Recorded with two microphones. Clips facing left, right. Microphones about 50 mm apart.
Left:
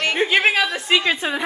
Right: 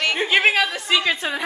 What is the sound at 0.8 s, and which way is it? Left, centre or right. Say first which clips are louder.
Speech: left 3 dB; centre.